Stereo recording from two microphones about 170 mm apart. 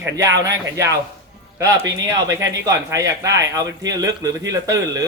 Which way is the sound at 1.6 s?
20° right (ahead or behind).